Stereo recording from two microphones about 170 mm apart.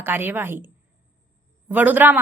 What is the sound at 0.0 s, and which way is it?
Speech, 10° right (ahead or behind).